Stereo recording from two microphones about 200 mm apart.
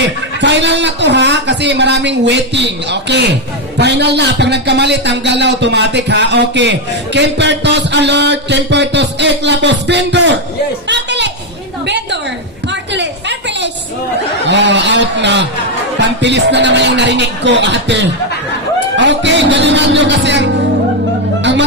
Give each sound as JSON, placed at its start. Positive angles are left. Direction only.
{"t": 0.0, "sound": "a man's voice", "side_deg": -60}
{"t": 10.8, "sound": "a sound", "side_deg": -60}
{"t": 14.4, "sound": "a man's voice", "side_deg": -65}